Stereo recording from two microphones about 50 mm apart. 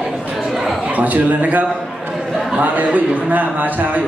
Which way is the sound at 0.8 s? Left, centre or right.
Right.